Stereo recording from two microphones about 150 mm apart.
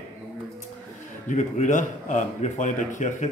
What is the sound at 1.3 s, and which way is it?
A man's voice, 55° left (ahead or behind).